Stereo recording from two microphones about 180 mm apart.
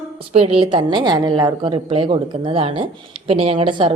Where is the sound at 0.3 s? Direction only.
30° right (ahead or behind).